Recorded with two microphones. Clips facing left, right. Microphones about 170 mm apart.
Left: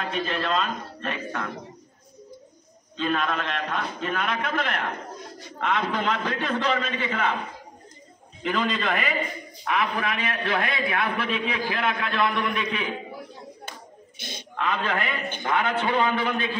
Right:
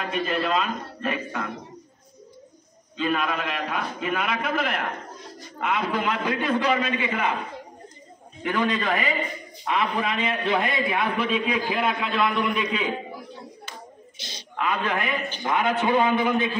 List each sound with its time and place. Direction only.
0.0 s a man's voice: 5° right (ahead or behind)
3.0 s a man's voice: 5° right (ahead or behind)
8.5 s a man's voice: 10° right (ahead or behind)
13.7 s hands: 55° left (ahead or behind)
14.6 s a man's voice: 10° right (ahead or behind)